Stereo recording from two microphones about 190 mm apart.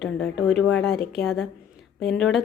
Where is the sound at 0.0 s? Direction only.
Centre (ahead or behind).